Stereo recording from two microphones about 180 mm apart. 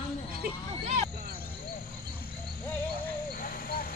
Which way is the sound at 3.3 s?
55° left (ahead or behind).